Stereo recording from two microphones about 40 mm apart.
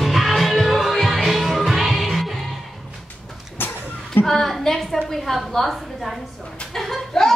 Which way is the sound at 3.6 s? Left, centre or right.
Left.